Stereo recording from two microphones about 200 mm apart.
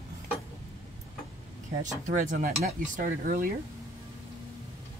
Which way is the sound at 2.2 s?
40° right (ahead or behind).